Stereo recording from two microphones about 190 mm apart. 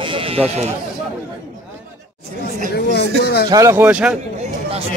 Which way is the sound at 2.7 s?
60° left (ahead or behind).